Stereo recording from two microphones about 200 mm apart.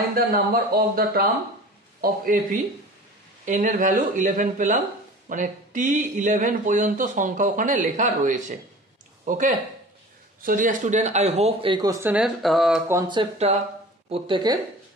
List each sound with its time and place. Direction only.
0.1 s speech: 50° right (ahead or behind); by 12.9 s centre (ahead or behind)
12.9 s speech: 25° right (ahead or behind)